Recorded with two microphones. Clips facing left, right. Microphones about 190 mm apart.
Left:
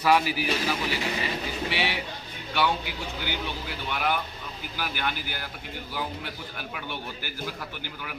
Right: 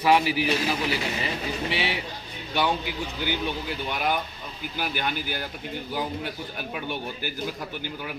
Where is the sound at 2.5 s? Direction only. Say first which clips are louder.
Right 1 dB; 20° right (ahead or behind).